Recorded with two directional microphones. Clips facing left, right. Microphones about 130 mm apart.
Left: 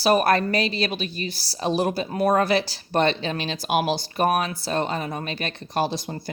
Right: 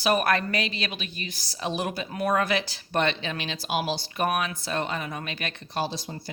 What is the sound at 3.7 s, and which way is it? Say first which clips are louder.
Speech: left 5 dB; 55° left (ahead or behind).